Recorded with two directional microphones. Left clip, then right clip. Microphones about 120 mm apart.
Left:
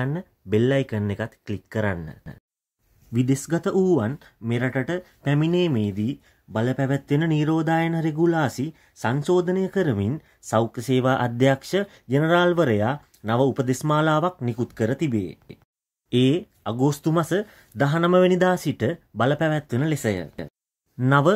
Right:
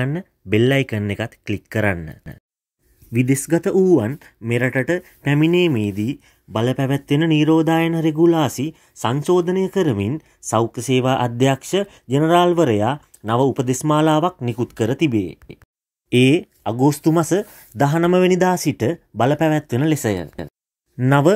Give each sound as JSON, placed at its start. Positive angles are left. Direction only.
{"t": 0.0, "sound": "speech", "side_deg": -25}
{"t": 3.1, "sound": "speech", "side_deg": -15}
{"t": 7.2, "sound": "speech", "side_deg": -10}
{"t": 14.8, "sound": "speech", "side_deg": -20}